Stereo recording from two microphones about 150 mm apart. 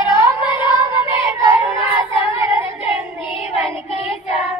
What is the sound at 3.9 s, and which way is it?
Child singing, 45° left (ahead or behind).